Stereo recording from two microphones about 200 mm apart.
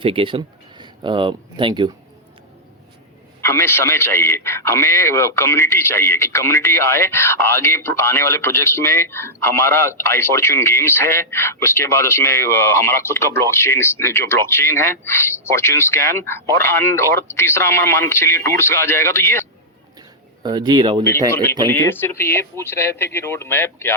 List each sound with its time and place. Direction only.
0.0 s speech: 25° right (ahead or behind)
3.4 s a man's voice: 15° left (ahead or behind)
20.4 s speech: 20° right (ahead or behind)
21.2 s a man's voice: 10° left (ahead or behind)